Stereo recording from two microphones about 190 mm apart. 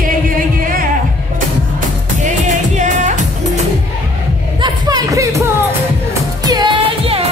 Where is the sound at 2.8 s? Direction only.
40° right (ahead or behind).